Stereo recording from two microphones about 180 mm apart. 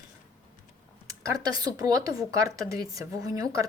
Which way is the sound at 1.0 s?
20° right (ahead or behind).